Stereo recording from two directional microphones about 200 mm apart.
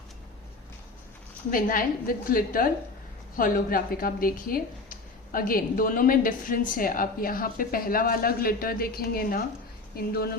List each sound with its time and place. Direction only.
1.5 s a woman's voice: 45° left (ahead or behind)